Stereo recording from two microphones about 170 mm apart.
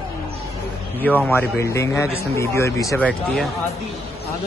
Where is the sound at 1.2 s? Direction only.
15° left (ahead or behind).